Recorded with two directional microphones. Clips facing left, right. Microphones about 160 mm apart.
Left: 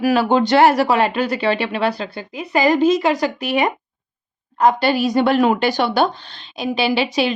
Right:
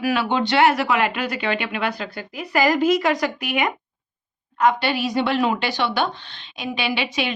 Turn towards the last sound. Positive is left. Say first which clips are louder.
# left 6 dB
turn(degrees=35)  # may be behind; listen again after turning